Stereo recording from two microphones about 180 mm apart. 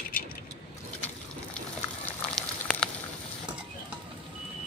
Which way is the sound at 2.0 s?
5° left (ahead or behind).